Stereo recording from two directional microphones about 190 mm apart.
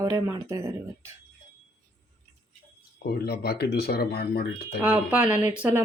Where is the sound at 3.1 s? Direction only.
55° left (ahead or behind).